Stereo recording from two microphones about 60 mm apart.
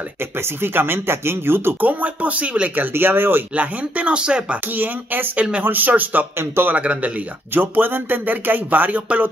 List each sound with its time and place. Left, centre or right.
0.6 s speech: right
1.9 s speech: right
2.7 s speech: right
3.5 s speech: right
4.7 s speech: right
6.3 s speech: right
6.7 s speech: right
7.5 s speech: right